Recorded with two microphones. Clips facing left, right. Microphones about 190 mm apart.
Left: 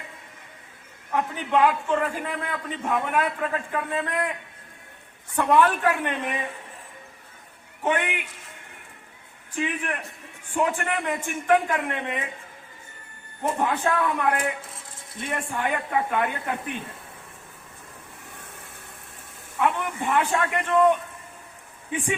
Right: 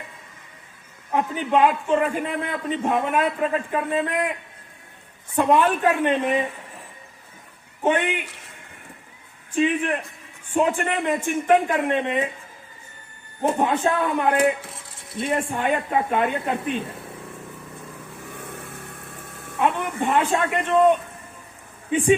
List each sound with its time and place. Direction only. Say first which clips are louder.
1.1 s a man's voice: right 3 dB; 20° right (ahead or behind)
5.3 s a man's voice: right 2 dB; 20° right (ahead or behind)
7.9 s a man's voice: right 4 dB; 25° right (ahead or behind)
9.6 s a man's voice: right 7 dB; 25° right (ahead or behind)
13.6 s a man's voice: right 1 dB; 25° right (ahead or behind)
18.3 s vehicle: right 9 dB; 65° right (ahead or behind)
19.5 s a man's voice: right 2 dB; 20° right (ahead or behind)